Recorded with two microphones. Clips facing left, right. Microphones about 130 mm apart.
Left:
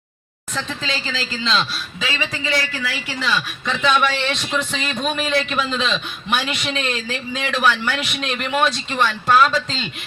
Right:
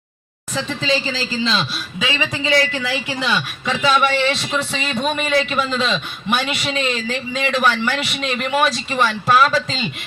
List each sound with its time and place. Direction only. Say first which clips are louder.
0.5 s speech: right 6 dB; 5° right (ahead or behind); by 3.4 s 20° right (ahead or behind)
3.7 s a man's voice: right 2 dB; 5° right (ahead or behind)